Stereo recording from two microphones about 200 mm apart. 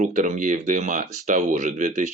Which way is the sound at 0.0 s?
35° right (ahead or behind).